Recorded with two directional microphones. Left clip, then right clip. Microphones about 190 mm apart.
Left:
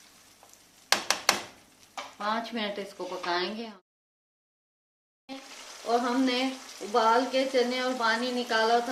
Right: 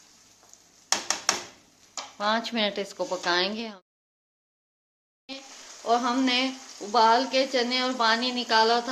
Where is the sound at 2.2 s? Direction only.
60° right (ahead or behind).